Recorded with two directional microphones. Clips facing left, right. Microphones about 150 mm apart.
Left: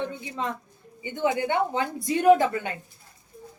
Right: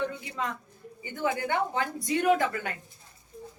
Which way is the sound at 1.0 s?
20° left (ahead or behind).